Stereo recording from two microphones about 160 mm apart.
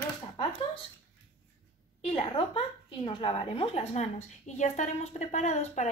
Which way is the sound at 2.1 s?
30° left (ahead or behind).